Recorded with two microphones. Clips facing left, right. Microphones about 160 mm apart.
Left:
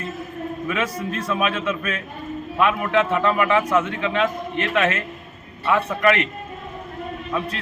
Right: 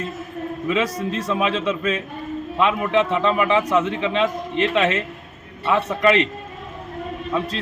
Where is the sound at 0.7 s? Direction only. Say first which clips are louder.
Right 4 dB; 20° right (ahead or behind).